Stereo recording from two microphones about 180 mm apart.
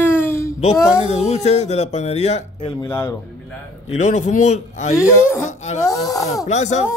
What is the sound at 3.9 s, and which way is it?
A man's voice, 40° left (ahead or behind).